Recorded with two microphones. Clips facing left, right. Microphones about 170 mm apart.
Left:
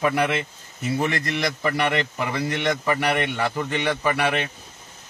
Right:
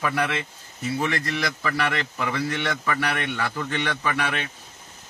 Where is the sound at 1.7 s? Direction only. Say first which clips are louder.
Left 3 dB; 20° left (ahead or behind).